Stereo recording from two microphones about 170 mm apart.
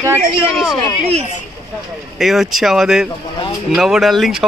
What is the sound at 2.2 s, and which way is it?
A man's voice, centre (ahead or behind).